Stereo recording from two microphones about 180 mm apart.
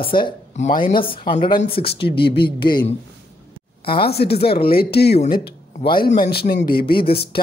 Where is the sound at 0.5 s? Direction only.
40° left (ahead or behind).